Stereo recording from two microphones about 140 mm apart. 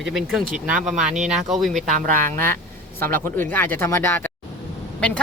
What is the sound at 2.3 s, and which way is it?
Speech, 15° left (ahead or behind).